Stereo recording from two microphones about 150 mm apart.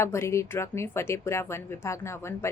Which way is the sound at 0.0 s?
15° left (ahead or behind).